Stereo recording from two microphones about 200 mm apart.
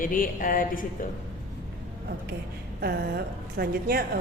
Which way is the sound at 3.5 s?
50° right (ahead or behind).